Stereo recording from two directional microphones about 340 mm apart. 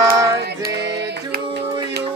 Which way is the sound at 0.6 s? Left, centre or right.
Right.